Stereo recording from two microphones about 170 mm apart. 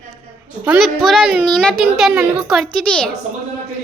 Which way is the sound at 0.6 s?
10° right (ahead or behind).